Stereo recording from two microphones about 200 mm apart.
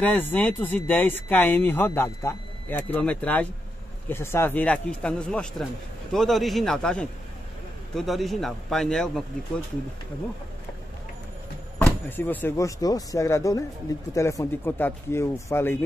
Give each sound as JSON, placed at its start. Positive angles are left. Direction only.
{"t": 0.0, "sound": "a man's voice", "side_deg": 10}
{"t": 11.8, "sound": "speech", "side_deg": 10}